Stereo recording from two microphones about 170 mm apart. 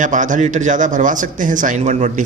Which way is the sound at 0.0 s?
50° right (ahead or behind).